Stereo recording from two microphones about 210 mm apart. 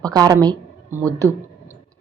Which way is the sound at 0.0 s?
20° right (ahead or behind).